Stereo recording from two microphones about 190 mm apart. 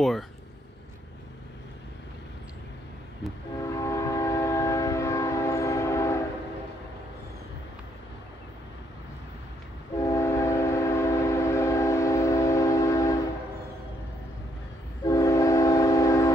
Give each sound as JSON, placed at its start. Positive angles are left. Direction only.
{"t": 3.6, "sound": "train", "side_deg": 15}
{"t": 9.9, "sound": "train", "side_deg": 15}
{"t": 15.0, "sound": "train", "side_deg": 15}